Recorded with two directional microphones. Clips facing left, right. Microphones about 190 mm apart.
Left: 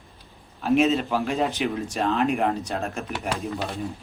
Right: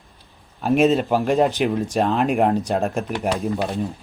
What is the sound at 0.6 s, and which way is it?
Speech, 50° right (ahead or behind).